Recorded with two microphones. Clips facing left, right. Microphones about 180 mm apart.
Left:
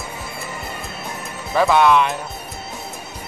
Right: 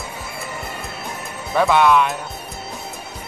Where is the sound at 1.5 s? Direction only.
Centre (ahead or behind).